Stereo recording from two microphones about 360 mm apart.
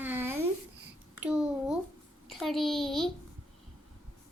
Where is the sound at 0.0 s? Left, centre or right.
Centre.